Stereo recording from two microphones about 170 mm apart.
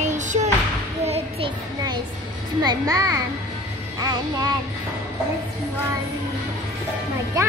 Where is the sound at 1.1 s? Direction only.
35° right (ahead or behind).